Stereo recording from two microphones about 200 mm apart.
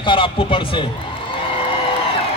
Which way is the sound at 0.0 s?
25° left (ahead or behind).